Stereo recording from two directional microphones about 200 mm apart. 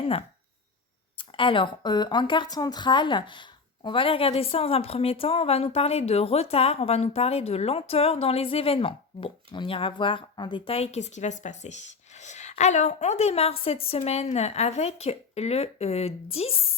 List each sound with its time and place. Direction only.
1.1 s speech: 25° left (ahead or behind)